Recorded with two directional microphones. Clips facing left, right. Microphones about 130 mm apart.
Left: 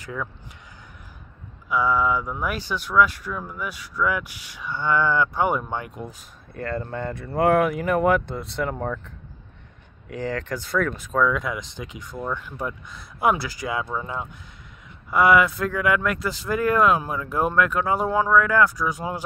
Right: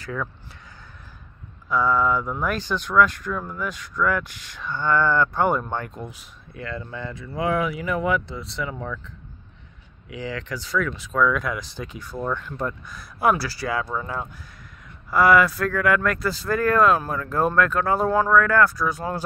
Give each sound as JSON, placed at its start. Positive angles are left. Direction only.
{"t": 0.0, "sound": "speech", "side_deg": 15}
{"t": 1.7, "sound": "speech", "side_deg": 10}
{"t": 6.0, "sound": "speech", "side_deg": 45}
{"t": 11.1, "sound": "speech", "side_deg": 25}
{"t": 12.8, "sound": "speech", "side_deg": 25}